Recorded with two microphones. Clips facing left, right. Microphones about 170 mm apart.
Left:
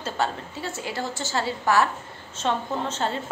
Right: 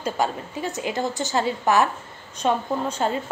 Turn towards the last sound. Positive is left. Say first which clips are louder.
# right 3 dB
turn(degrees=-10)  # may be behind; listen again after turning